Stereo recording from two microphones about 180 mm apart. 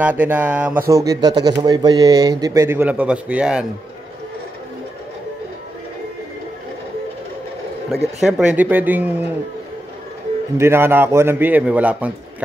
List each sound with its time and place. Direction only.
0.0 s speech: 10° right (ahead or behind)
8.2 s speech: 5° right (ahead or behind)
10.6 s speech: 15° right (ahead or behind)